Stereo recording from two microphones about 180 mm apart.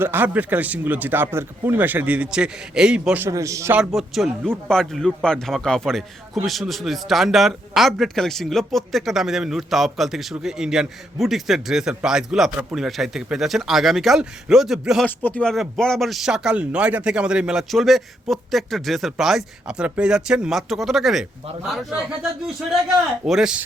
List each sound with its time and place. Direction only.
0.0 s speech: 10° right (ahead or behind)
3.2 s speech: 15° right (ahead or behind)
3.8 s speech: centre (ahead or behind)
23.2 s speech: 5° right (ahead or behind)